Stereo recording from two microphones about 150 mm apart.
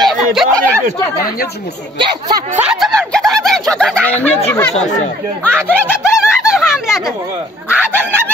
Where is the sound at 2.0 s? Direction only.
25° right (ahead or behind).